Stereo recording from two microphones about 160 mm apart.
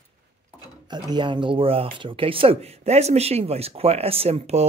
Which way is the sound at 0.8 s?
25° right (ahead or behind).